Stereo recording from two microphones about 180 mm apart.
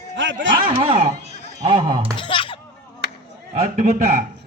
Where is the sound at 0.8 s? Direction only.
30° right (ahead or behind).